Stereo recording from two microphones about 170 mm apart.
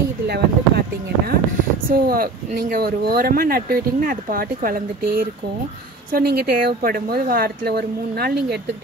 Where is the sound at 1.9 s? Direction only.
60° right (ahead or behind).